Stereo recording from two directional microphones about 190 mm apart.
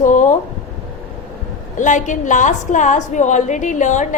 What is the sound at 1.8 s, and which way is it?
A woman's voice, 40° left (ahead or behind).